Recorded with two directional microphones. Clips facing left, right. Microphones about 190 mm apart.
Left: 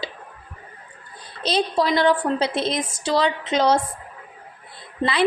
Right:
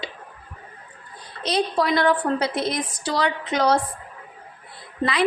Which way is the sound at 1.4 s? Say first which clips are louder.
Left 1 dB; 30° left (ahead or behind).